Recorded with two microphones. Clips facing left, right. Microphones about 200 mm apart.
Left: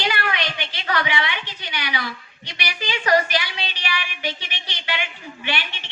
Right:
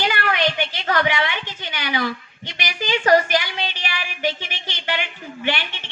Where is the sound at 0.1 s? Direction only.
45° right (ahead or behind).